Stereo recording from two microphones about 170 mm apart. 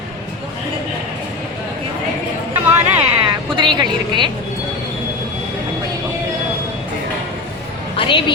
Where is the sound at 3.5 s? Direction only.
25° right (ahead or behind).